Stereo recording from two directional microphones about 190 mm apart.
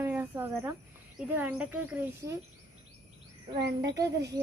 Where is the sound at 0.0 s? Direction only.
10° right (ahead or behind).